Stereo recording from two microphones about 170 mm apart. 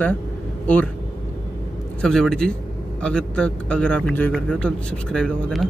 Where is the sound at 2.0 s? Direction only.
5° left (ahead or behind).